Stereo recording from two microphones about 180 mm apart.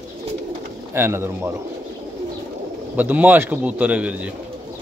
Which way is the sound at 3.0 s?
10° right (ahead or behind).